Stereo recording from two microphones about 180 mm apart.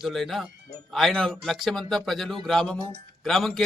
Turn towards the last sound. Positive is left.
turn(degrees=0)  # may be behind; listen again after turning